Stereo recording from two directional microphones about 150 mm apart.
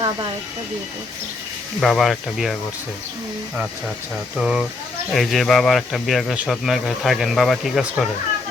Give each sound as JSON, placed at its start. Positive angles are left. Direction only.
{"t": 1.8, "sound": "speech", "side_deg": 0}
{"t": 4.4, "sound": "speech", "side_deg": 0}